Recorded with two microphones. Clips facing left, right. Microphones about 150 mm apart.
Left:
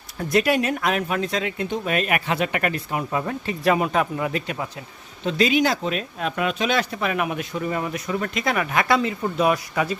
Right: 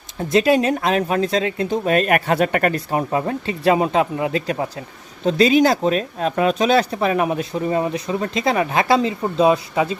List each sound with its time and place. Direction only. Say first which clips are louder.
0.2 s speech: right 4 dB; 25° right (ahead or behind)